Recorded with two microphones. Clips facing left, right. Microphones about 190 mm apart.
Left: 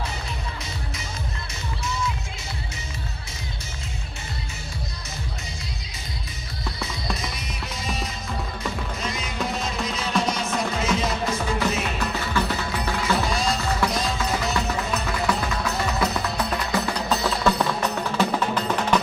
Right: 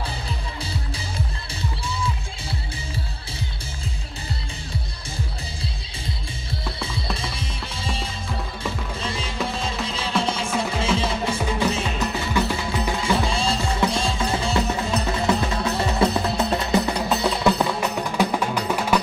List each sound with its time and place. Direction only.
7.2 s music: 30° right (ahead or behind)
12.4 s music: 10° right (ahead or behind)
13.0 s music: 30° right (ahead or behind); by 18.9 s 10° right (ahead or behind)